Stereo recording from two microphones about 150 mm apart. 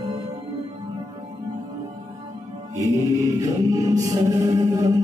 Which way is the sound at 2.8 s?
20° right (ahead or behind).